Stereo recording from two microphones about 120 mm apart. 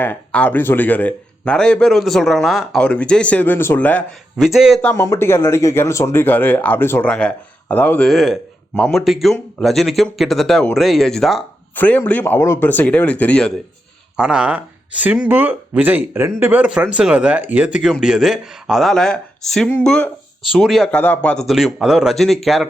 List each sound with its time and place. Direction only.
0.0 s speech: 10° left (ahead or behind)
4.4 s speech: 5° right (ahead or behind)
4.8 s speech: 10° left (ahead or behind)
5.0 s speech: 20° left (ahead or behind); by 11.4 s centre (ahead or behind)
11.7 s speech: 15° left (ahead or behind)
14.2 s speech: 5° right (ahead or behind)
20.9 s speech: 15° left (ahead or behind)
21.4 s speech: centre (ahead or behind)